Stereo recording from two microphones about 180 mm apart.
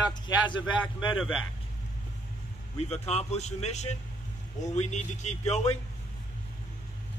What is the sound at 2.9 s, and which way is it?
A man's voice, 35° left (ahead or behind).